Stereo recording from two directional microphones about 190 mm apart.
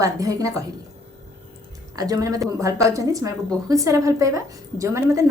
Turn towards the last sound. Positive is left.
turn(degrees=-15)  # may be behind; listen again after turning